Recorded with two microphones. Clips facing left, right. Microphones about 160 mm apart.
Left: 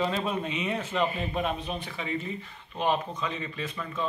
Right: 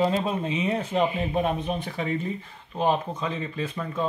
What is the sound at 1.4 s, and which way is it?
Speech, 50° right (ahead or behind).